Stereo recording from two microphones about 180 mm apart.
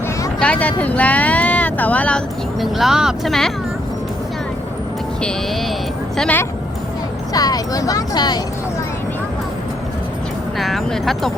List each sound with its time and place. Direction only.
0.3 s speech: 5° left (ahead or behind)
6.1 s speech: 5° left (ahead or behind)
7.3 s speech: 20° left (ahead or behind)
10.6 s speech: centre (ahead or behind)